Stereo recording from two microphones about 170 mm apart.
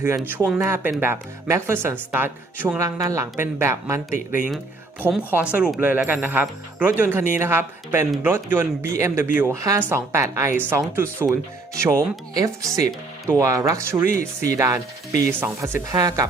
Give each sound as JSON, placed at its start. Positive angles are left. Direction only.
{"t": 0.0, "sound": "speech", "side_deg": -15}